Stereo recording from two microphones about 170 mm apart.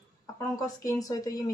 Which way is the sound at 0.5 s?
20° left (ahead or behind).